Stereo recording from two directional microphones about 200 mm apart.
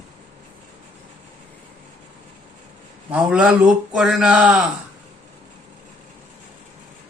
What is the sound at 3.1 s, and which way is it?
Speech, 5° right (ahead or behind).